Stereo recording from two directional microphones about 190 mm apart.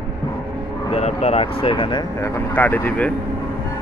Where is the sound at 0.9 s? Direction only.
30° left (ahead or behind); by 3.1 s 10° left (ahead or behind).